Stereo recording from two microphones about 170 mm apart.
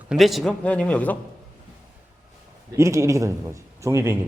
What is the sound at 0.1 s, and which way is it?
Speech, centre (ahead or behind).